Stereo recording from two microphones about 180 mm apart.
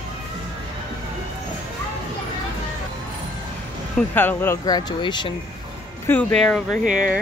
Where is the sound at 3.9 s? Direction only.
10° left (ahead or behind); by 5.3 s 25° left (ahead or behind).